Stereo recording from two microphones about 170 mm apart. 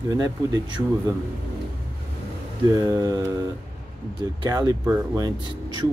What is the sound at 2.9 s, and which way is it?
Speech, 20° right (ahead or behind).